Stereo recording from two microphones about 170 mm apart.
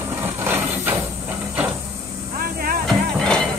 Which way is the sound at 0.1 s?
10° right (ahead or behind).